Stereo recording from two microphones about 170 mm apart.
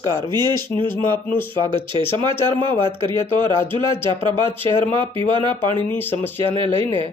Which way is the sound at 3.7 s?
30° right (ahead or behind).